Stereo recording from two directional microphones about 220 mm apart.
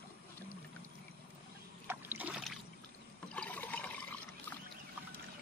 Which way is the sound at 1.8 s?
10° right (ahead or behind).